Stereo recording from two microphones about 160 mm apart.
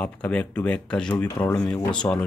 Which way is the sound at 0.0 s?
5° left (ahead or behind).